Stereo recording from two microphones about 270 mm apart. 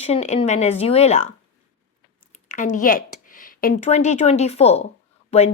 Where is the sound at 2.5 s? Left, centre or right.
Left.